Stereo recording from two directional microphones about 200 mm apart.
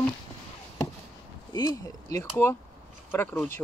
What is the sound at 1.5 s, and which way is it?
Speech, 15° left (ahead or behind).